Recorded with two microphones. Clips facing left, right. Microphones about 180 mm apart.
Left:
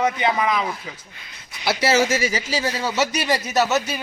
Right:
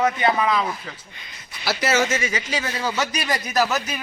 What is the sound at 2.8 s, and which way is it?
Speech, 5° left (ahead or behind).